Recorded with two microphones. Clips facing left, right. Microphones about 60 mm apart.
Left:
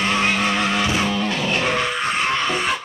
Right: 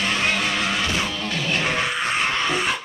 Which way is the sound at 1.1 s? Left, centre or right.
Left.